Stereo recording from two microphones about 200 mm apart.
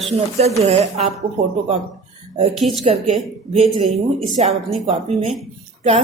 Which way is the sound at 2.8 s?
30° right (ahead or behind).